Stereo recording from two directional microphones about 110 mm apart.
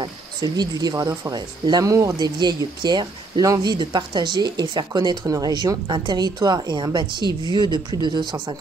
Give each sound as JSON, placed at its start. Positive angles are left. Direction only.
{"t": 0.0, "sound": "speech", "side_deg": -40}